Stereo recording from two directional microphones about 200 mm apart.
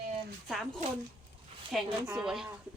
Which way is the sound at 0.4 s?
Centre (ahead or behind).